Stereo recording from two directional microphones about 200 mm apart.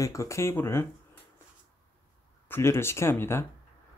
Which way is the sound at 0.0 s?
15° left (ahead or behind).